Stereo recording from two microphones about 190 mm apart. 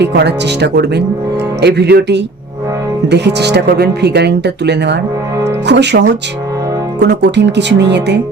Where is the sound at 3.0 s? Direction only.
65° right (ahead or behind).